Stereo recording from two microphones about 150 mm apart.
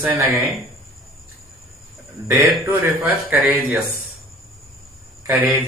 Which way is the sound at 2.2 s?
10° right (ahead or behind).